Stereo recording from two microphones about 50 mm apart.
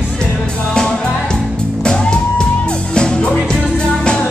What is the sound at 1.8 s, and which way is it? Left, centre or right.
Music, centre.